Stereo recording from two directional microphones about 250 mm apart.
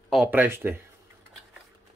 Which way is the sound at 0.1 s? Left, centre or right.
Centre.